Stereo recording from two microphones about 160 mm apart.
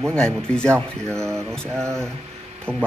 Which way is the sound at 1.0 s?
15° right (ahead or behind).